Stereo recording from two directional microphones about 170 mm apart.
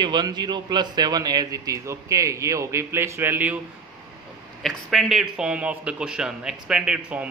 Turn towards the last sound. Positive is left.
turn(degrees=-5)  # may be behind; listen again after turning